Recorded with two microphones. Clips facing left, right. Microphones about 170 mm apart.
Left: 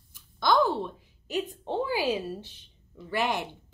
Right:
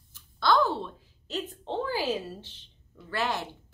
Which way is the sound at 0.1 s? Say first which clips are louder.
Even; 15° left (ahead or behind).